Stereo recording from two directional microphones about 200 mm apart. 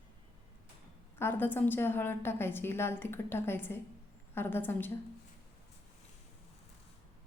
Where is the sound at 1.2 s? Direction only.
10° left (ahead or behind).